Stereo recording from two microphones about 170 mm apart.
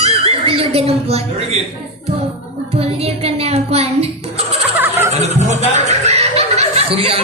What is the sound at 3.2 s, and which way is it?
Speech, 35° right (ahead or behind).